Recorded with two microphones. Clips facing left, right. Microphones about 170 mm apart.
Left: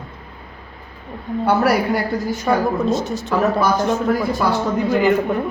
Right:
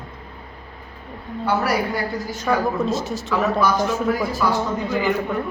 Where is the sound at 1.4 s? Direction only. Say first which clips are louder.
Left 4 dB; 60° left (ahead or behind).